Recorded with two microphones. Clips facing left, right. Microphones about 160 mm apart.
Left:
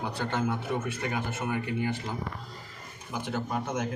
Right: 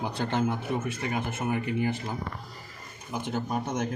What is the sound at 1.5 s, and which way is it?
Speech, 10° right (ahead or behind).